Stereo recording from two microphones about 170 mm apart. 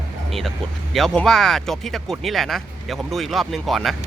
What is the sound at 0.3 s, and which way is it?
Speech, centre (ahead or behind).